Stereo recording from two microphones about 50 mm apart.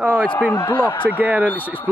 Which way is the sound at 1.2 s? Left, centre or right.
Right.